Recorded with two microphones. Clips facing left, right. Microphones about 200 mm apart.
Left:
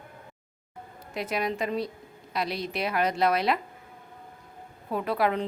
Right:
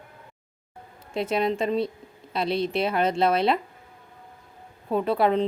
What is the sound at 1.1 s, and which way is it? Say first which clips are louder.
Speech: right 5 dB; 25° right (ahead or behind).